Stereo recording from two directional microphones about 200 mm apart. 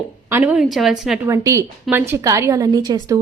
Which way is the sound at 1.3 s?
15° right (ahead or behind).